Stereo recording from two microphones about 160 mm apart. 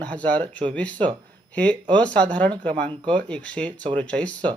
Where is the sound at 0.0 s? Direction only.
10° left (ahead or behind).